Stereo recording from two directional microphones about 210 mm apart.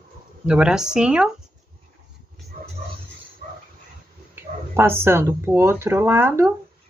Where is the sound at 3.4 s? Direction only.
40° right (ahead or behind).